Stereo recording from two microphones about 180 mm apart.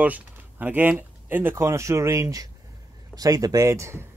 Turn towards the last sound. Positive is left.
turn(degrees=-15)  # may be behind; listen again after turning